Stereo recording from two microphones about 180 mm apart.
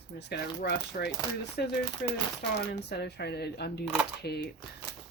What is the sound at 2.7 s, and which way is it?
Speech, 65° left (ahead or behind).